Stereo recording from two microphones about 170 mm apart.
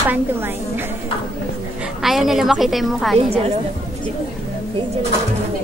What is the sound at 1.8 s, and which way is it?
A woman's voice, centre (ahead or behind).